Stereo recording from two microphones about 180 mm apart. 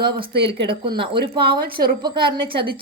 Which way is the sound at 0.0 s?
25° right (ahead or behind).